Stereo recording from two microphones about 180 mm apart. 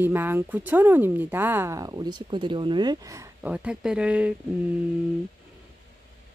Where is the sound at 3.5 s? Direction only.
5° right (ahead or behind).